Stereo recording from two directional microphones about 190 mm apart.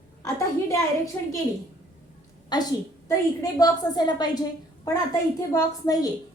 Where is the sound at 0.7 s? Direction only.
15° left (ahead or behind).